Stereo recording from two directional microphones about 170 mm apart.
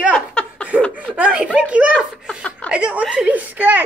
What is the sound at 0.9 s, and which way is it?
A child's voice, 10° right (ahead or behind).